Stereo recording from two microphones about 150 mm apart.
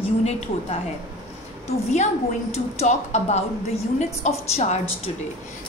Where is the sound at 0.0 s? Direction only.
45° left (ahead or behind).